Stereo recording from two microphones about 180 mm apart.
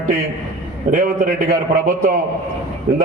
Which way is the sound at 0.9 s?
50° right (ahead or behind).